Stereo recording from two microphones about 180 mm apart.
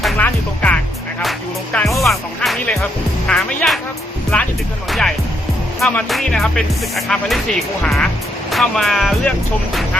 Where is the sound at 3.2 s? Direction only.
5° left (ahead or behind).